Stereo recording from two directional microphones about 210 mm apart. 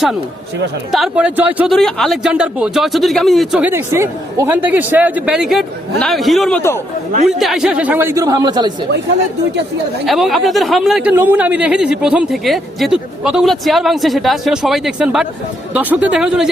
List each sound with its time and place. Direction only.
0.9 s speech: centre (ahead or behind)
6.6 s speech: 10° left (ahead or behind)
7.3 s speech: centre (ahead or behind); by 8.7 s 20° right (ahead or behind)
10.1 s speech: centre (ahead or behind)